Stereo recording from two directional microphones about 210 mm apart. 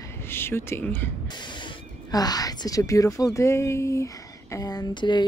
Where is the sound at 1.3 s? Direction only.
20° left (ahead or behind).